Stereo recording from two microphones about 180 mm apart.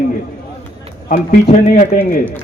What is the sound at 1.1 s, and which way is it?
Speech, 45° left (ahead or behind).